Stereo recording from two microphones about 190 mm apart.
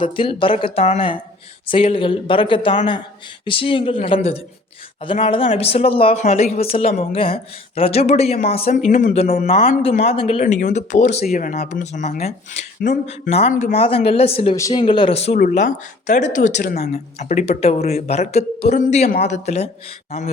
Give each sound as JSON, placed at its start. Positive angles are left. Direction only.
{"t": 0.0, "sound": "speech", "side_deg": 25}
{"t": 14.5, "sound": "speech", "side_deg": 20}
{"t": 15.4, "sound": "speech", "side_deg": 45}
{"t": 16.7, "sound": "speech", "side_deg": 55}
{"t": 17.2, "sound": "speech", "side_deg": 35}